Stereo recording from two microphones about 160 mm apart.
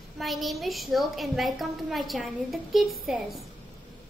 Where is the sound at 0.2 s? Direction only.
Centre (ahead or behind).